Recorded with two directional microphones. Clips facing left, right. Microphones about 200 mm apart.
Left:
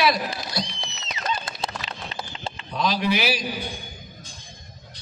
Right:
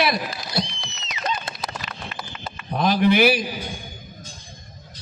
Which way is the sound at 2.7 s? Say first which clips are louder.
Right 5 dB; 55° right (ahead or behind).